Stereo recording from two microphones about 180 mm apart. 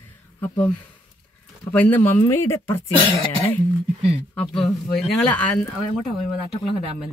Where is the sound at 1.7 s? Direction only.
10° left (ahead or behind).